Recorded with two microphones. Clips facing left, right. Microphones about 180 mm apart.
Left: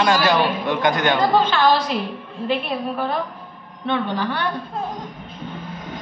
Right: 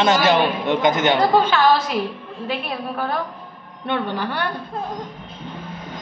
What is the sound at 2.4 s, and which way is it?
Speech, centre (ahead or behind).